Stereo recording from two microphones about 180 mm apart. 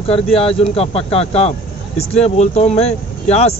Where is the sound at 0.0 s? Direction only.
30° left (ahead or behind).